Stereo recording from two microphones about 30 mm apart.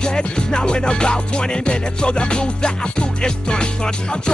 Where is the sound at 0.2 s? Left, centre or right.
Left.